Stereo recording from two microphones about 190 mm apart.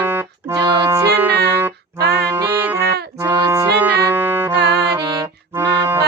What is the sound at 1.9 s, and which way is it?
Music, 60° right (ahead or behind).